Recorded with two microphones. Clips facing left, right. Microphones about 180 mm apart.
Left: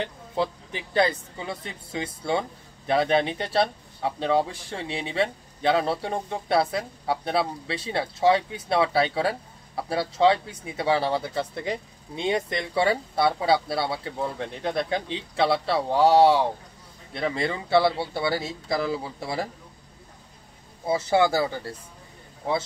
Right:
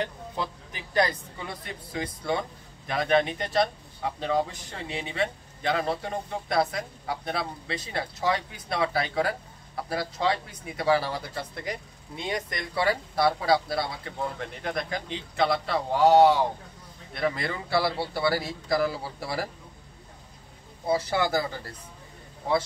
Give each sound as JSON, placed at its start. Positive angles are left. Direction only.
{"t": 0.4, "sound": "speech", "side_deg": 30}
{"t": 20.9, "sound": "speech", "side_deg": 25}